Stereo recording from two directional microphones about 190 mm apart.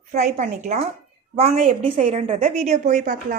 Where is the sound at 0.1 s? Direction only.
40° right (ahead or behind).